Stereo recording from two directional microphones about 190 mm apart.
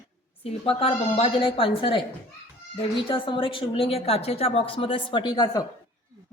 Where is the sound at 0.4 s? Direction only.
30° left (ahead or behind).